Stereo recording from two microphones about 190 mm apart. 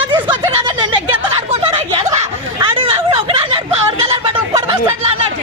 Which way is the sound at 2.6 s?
30° right (ahead or behind).